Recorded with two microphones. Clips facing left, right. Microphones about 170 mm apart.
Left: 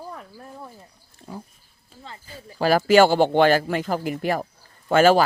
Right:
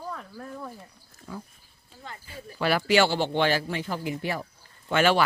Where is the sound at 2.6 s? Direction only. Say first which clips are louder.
Left 7 dB; 40° left (ahead or behind).